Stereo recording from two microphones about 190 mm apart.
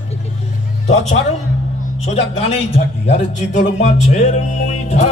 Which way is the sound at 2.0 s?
35° left (ahead or behind).